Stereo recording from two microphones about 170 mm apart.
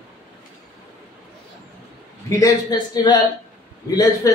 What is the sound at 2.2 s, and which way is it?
A man's voice, 20° left (ahead or behind).